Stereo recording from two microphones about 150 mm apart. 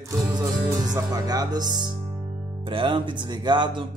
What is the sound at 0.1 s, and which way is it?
A man's voice, 25° right (ahead or behind).